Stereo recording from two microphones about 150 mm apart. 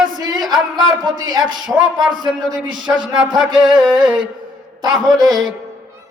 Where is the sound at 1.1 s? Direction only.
30° right (ahead or behind).